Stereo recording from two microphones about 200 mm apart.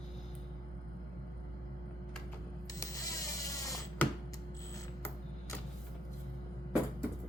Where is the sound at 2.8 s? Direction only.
15° left (ahead or behind).